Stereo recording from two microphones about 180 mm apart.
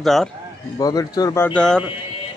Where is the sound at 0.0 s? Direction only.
Centre (ahead or behind).